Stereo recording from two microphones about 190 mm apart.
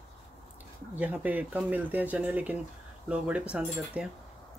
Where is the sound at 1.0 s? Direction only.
10° right (ahead or behind).